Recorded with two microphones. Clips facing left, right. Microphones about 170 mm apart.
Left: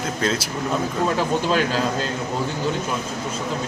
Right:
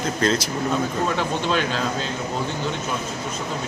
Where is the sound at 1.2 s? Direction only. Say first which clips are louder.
Left 2 dB; 40° left (ahead or behind).